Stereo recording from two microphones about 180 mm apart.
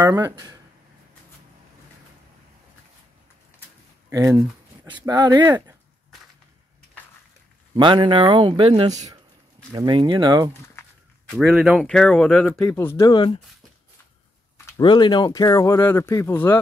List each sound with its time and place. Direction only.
0.0 s speech: 20° right (ahead or behind)
4.1 s speech: 20° right (ahead or behind)
7.7 s speech: 25° right (ahead or behind)
8.9 s speech: 20° right (ahead or behind)
11.2 s speech: centre (ahead or behind)
11.8 s speech: 5° left (ahead or behind); by 13.4 s 25° left (ahead or behind)
14.8 s speech: 25° left (ahead or behind)